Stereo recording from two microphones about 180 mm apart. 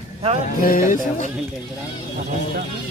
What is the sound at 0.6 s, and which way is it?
Speech, 50° left (ahead or behind).